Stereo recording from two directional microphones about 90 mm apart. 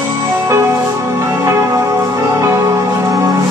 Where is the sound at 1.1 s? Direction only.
30° right (ahead or behind).